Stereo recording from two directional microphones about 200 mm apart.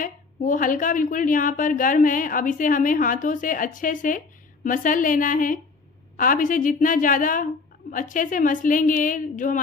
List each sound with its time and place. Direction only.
0.0 s a woman's voice: 40° left (ahead or behind)